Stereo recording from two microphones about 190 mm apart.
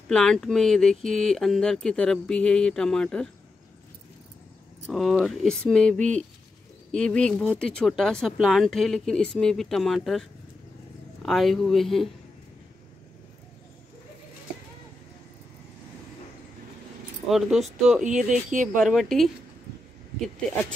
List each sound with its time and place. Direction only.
0.1 s speech: 5° left (ahead or behind)
4.8 s speech: centre (ahead or behind)
7.0 s speech: 5° left (ahead or behind)
11.2 s speech: centre (ahead or behind)
17.3 s speech: centre (ahead or behind)
18.0 s speech: 40° right (ahead or behind)
18.8 s speech: centre (ahead or behind)